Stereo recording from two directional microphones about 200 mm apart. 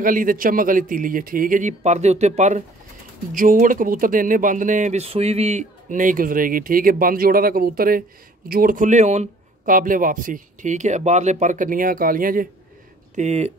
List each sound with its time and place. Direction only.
0.0 s speech: 45° right (ahead or behind)